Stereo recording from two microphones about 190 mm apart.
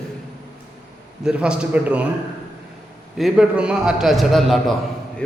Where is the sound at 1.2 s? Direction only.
5° right (ahead or behind).